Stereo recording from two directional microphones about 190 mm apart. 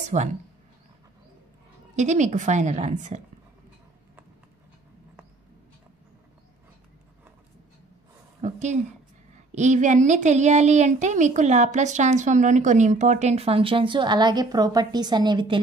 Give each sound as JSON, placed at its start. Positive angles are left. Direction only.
{"t": 0.1, "sound": "a woman's voice", "side_deg": -35}
{"t": 2.0, "sound": "a woman's voice", "side_deg": -40}
{"t": 8.4, "sound": "a woman's voice", "side_deg": -40}